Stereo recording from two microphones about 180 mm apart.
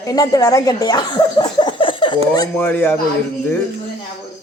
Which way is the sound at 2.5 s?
10° left (ahead or behind).